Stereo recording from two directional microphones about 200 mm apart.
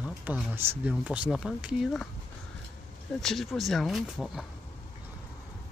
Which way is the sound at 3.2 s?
Centre (ahead or behind).